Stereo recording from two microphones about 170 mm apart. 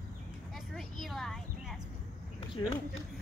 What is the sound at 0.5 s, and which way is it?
Vehicle, centre (ahead or behind).